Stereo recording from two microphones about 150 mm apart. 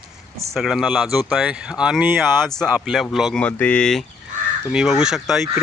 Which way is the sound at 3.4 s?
10° left (ahead or behind).